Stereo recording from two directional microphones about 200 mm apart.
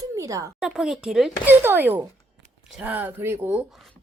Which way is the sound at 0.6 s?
Centre (ahead or behind).